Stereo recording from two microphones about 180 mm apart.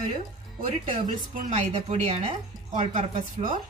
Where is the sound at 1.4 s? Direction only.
35° right (ahead or behind).